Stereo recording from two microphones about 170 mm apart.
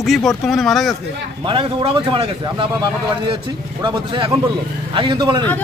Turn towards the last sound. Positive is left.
turn(degrees=-25)  # may be behind; listen again after turning